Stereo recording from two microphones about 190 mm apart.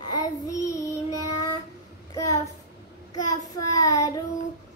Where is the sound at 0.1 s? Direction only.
20° left (ahead or behind).